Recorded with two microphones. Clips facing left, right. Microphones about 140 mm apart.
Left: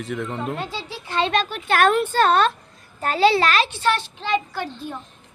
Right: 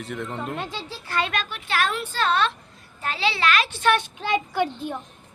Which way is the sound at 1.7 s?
50° left (ahead or behind).